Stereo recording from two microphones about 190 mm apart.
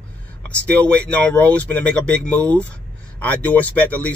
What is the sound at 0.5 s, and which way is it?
Speech, 5° left (ahead or behind).